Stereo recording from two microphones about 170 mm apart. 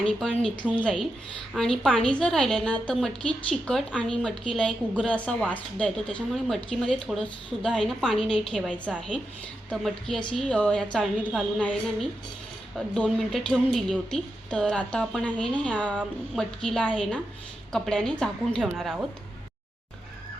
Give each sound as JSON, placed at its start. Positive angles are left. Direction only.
{"t": 0.0, "sound": "a woman's voice", "side_deg": 5}